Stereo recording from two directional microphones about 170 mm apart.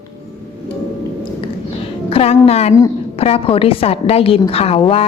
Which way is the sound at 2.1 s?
35° left (ahead or behind).